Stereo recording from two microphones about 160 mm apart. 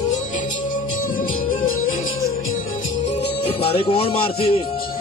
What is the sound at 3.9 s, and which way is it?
Speech, 35° left (ahead or behind).